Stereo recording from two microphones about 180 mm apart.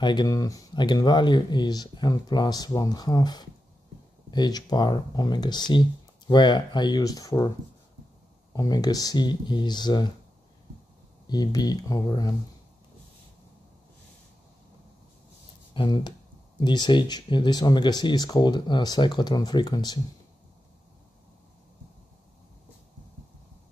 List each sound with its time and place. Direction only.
0.0 s speech: 25° left (ahead or behind)
8.5 s speech: 20° left (ahead or behind)
11.2 s speech: 20° left (ahead or behind)
15.7 s speech: 25° left (ahead or behind)